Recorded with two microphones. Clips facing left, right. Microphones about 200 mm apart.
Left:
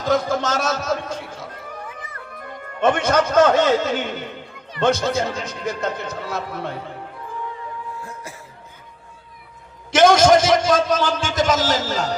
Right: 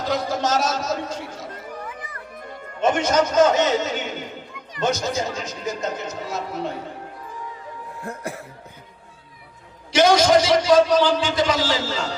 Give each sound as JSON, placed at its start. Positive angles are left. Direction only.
{"t": 0.0, "sound": "music", "side_deg": 50}
{"t": 2.8, "sound": "a man's voice", "side_deg": 60}
{"t": 8.0, "sound": "speech", "side_deg": -60}
{"t": 9.9, "sound": "a man's voice", "side_deg": 50}